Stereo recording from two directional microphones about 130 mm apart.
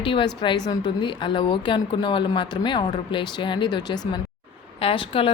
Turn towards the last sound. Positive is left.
turn(degrees=45)  # may be behind; listen again after turning